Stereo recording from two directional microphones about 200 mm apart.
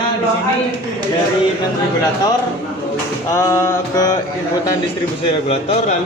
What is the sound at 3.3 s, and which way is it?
Mantra, 15° left (ahead or behind).